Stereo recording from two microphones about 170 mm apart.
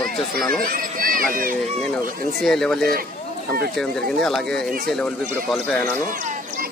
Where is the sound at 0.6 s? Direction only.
55° right (ahead or behind).